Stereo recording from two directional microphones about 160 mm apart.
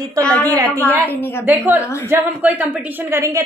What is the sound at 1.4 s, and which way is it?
A woman's voice, 10° right (ahead or behind).